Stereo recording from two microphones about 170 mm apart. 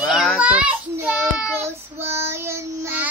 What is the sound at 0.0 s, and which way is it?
Child singing, centre (ahead or behind).